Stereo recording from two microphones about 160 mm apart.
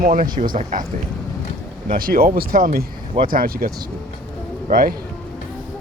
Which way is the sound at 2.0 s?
65° right (ahead or behind).